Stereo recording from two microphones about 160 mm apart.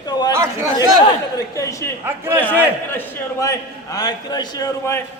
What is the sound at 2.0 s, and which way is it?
Speech, 15° right (ahead or behind).